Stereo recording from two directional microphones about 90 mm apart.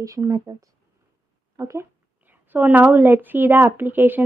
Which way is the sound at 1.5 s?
35° right (ahead or behind).